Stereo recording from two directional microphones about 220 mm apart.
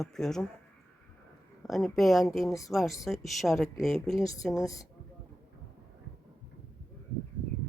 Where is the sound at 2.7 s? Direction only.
Centre (ahead or behind).